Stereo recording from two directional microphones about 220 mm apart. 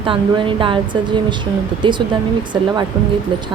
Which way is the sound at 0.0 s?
25° right (ahead or behind).